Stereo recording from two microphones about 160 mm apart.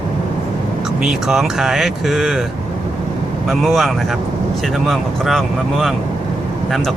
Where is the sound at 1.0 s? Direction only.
Centre (ahead or behind).